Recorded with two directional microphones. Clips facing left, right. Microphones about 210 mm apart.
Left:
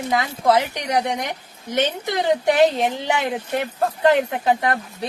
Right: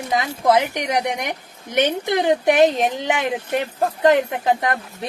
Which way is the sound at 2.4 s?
15° right (ahead or behind).